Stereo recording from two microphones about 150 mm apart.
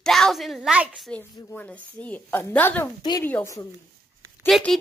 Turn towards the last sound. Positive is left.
turn(degrees=0)  # may be behind; listen again after turning